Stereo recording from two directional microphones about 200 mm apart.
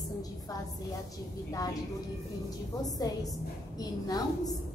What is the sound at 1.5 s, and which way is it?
Speech, 15° left (ahead or behind).